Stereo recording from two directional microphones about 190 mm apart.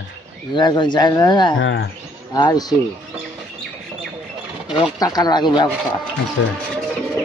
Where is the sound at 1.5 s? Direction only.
90° left.